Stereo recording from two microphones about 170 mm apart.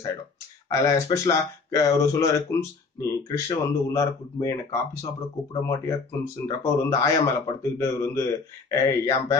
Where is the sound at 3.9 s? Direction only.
15° left (ahead or behind).